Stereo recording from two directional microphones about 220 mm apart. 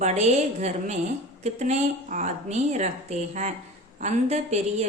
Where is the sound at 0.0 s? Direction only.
30° right (ahead or behind).